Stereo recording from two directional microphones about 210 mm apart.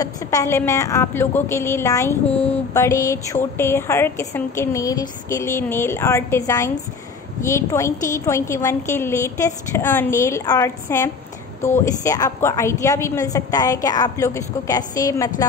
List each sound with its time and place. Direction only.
0.0 s a woman's voice: 15° left (ahead or behind)